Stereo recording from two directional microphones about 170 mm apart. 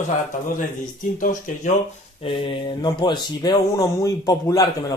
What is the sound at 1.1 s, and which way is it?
Speech, 50° left (ahead or behind).